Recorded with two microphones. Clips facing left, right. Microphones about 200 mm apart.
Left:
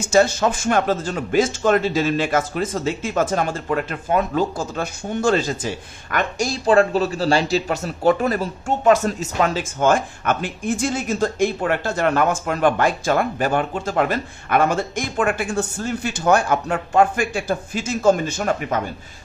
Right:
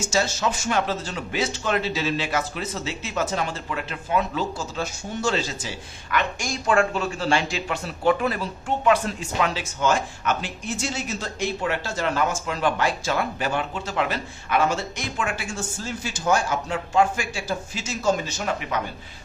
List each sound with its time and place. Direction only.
0.0 s speech: 55° left (ahead or behind)